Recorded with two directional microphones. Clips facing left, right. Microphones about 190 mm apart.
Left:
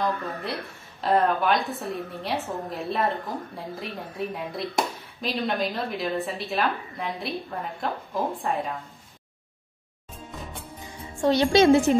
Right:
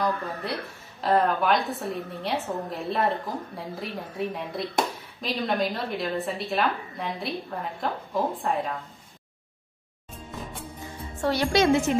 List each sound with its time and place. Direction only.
0.0 s a woman's voice: centre (ahead or behind)
11.1 s speech: 20° left (ahead or behind)